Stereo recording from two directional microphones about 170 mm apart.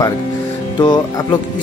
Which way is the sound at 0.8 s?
25° left (ahead or behind).